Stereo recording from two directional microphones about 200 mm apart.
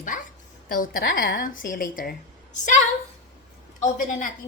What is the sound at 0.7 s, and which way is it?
A woman's voice, 45° left (ahead or behind).